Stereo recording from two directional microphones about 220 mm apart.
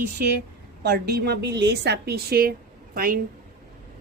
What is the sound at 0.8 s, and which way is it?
A woman's voice, 50° right (ahead or behind).